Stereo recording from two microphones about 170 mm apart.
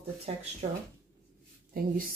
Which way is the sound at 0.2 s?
40° right (ahead or behind).